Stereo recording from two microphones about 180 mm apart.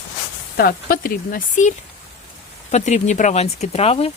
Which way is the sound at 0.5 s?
55° left (ahead or behind).